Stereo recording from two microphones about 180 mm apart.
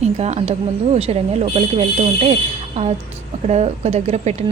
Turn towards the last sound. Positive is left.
turn(degrees=-35)  # may be behind; listen again after turning